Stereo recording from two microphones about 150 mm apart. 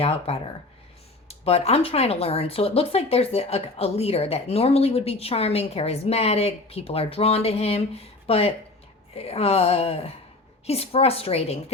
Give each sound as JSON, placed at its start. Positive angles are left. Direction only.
{"t": 0.0, "sound": "speech", "side_deg": 40}